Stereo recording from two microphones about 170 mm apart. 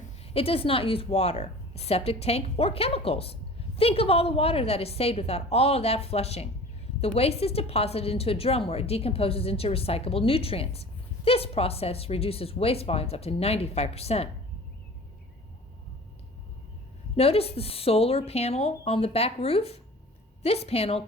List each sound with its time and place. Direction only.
0.2 s a woman's voice: 35° left (ahead or behind)
17.2 s a woman's voice: 35° left (ahead or behind)